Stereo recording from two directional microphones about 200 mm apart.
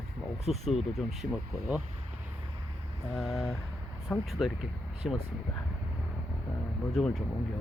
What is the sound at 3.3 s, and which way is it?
Speech, 15° left (ahead or behind).